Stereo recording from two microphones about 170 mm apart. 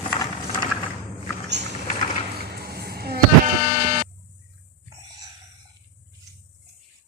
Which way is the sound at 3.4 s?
45° right (ahead or behind).